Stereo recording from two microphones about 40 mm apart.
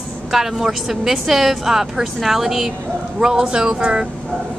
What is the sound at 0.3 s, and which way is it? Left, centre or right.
A woman's voice, centre.